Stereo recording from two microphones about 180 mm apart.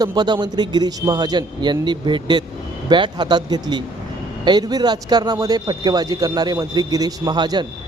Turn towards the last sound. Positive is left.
turn(degrees=-25)  # may be behind; listen again after turning